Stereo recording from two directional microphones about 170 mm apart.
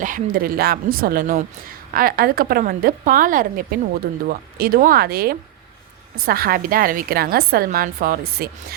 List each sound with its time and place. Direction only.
0.0 s a woman's voice: 55° right (ahead or behind)